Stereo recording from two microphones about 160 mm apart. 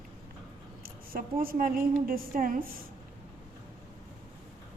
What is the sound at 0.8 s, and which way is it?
A woman's voice, 65° right (ahead or behind).